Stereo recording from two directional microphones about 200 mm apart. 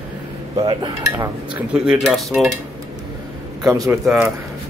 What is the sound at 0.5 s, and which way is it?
Speech, 25° right (ahead or behind).